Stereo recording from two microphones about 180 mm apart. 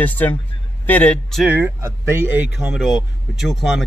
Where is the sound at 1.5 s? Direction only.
10° right (ahead or behind).